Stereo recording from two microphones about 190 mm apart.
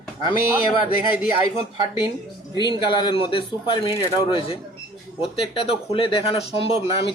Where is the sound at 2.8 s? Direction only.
25° left (ahead or behind).